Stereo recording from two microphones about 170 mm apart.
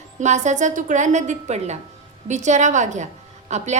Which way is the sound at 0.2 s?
45° right (ahead or behind).